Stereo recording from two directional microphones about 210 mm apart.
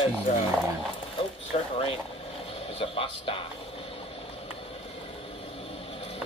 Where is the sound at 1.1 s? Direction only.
25° left (ahead or behind).